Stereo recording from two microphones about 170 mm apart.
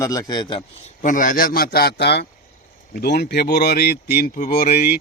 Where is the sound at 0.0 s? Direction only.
20° left (ahead or behind).